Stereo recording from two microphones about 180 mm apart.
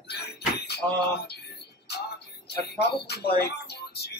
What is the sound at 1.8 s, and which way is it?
Music, 65° left (ahead or behind).